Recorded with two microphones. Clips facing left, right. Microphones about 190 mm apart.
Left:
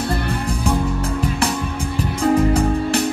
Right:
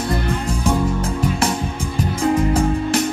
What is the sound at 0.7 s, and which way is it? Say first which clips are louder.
Music: right 2 dB; 35° left (ahead or behind).